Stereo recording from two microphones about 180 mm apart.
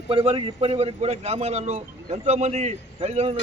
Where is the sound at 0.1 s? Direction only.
30° right (ahead or behind).